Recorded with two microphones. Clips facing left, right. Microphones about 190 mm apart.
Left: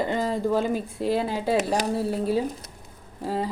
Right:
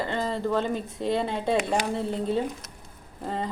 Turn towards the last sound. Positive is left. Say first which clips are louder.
# left 4 dB
turn(degrees=5)  # may be behind; listen again after turning